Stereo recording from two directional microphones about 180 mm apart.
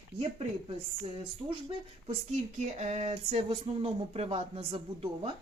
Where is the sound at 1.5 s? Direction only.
30° right (ahead or behind).